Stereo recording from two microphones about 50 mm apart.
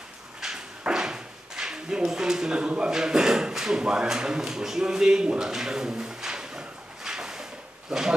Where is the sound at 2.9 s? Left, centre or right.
Centre.